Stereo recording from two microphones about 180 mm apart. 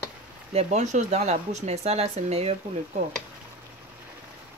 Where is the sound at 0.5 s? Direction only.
35° right (ahead or behind).